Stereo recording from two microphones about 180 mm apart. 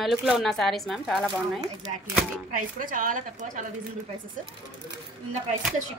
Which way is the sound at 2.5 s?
50° right (ahead or behind).